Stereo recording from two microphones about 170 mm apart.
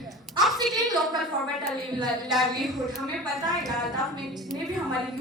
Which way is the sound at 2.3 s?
Centre (ahead or behind).